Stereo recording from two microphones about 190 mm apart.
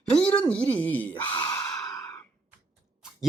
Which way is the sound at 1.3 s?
20° left (ahead or behind).